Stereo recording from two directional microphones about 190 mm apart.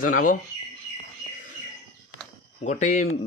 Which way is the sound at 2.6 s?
40° left (ahead or behind).